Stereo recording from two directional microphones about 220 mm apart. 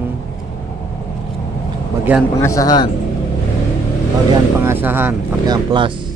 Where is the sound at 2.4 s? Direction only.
15° left (ahead or behind).